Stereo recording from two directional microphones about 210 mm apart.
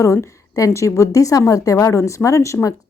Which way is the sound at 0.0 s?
15° left (ahead or behind).